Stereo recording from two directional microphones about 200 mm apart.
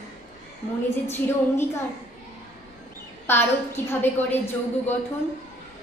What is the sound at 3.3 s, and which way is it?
A woman's voice, 10° left (ahead or behind).